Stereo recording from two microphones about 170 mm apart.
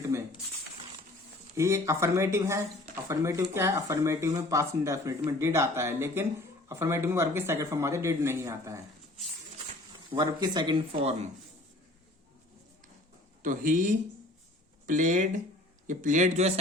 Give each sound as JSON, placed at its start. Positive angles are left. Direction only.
{"t": 0.1, "sound": "a sound", "side_deg": -15}
{"t": 1.5, "sound": "speech", "side_deg": -15}
{"t": 10.1, "sound": "speech", "side_deg": -25}
{"t": 13.4, "sound": "speech", "side_deg": -50}